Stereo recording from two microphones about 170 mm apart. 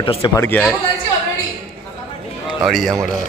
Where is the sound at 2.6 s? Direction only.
Centre (ahead or behind).